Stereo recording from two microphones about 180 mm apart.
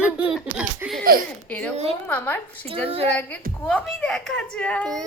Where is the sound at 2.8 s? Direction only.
35° right (ahead or behind).